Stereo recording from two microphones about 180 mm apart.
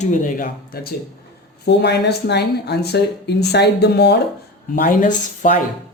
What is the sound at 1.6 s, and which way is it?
Speech, 70° left (ahead or behind).